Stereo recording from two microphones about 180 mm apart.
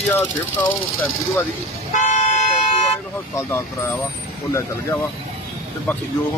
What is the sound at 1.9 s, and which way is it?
Toot, 40° left (ahead or behind).